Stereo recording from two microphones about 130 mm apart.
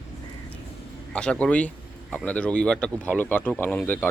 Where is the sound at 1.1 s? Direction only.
10° left (ahead or behind).